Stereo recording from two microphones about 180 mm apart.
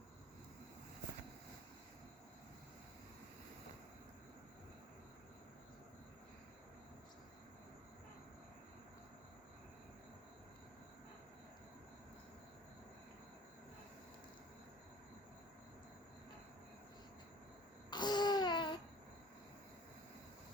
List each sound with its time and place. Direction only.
17.9 s babbling: 25° left (ahead or behind)